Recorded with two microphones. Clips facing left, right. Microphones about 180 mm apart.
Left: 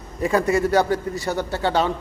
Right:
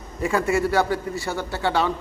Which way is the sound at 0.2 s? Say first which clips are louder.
Left 2 dB; 35° left (ahead or behind).